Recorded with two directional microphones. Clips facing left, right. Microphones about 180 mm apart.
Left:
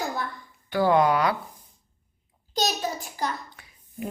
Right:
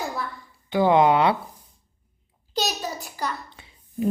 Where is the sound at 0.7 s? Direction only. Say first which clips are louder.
Right 3 dB; 20° right (ahead or behind).